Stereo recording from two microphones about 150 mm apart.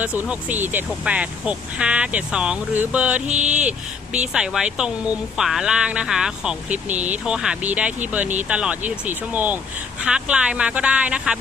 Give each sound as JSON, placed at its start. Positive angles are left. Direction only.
{"t": 0.0, "sound": "speech", "side_deg": -10}